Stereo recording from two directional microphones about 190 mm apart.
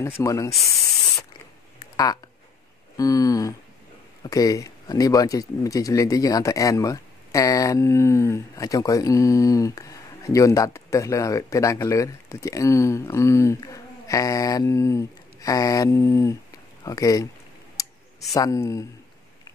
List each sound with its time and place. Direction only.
0.0 s speech: 15° left (ahead or behind)
3.0 s speech: 20° left (ahead or behind)
18.3 s speech: 15° left (ahead or behind)